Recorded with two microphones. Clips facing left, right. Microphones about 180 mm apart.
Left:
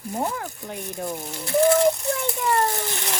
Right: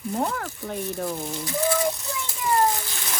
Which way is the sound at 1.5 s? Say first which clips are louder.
Left 7 dB; 60° left (ahead or behind).